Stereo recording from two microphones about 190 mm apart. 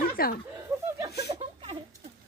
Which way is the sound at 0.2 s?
55° left (ahead or behind).